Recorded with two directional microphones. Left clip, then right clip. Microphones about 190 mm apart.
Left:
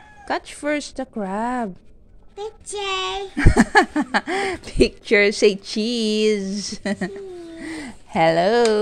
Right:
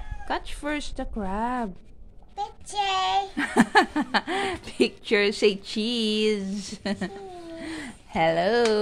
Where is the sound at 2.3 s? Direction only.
15° right (ahead or behind).